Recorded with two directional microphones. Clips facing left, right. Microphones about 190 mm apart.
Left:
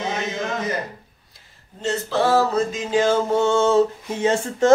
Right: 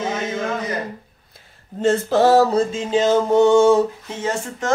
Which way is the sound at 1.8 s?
50° right (ahead or behind).